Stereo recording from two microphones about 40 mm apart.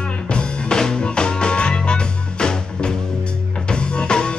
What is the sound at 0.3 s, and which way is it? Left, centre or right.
Music, left.